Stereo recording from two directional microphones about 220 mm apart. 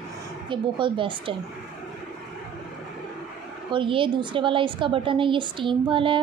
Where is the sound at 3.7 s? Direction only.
25° right (ahead or behind).